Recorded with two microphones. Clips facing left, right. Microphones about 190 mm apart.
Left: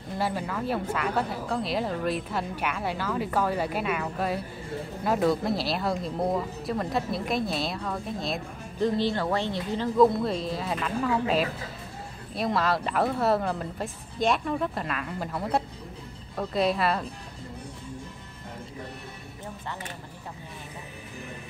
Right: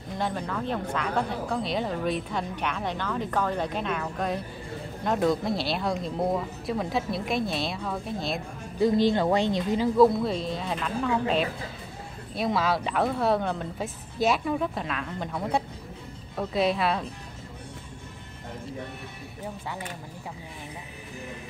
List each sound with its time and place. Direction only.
0.2 s speech: 5° left (ahead or behind)
8.8 s speech: 15° right (ahead or behind)
9.9 s speech: centre (ahead or behind)